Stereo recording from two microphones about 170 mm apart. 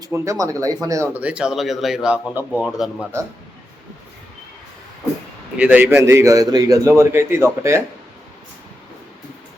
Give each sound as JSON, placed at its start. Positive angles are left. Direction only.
{"t": 0.0, "sound": "speech", "side_deg": -20}
{"t": 5.5, "sound": "speech", "side_deg": -10}